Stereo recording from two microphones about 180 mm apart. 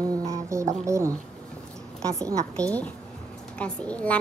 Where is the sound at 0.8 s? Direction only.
15° right (ahead or behind).